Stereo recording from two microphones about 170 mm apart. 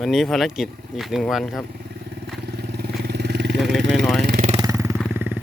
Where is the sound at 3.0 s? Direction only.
75° right (ahead or behind).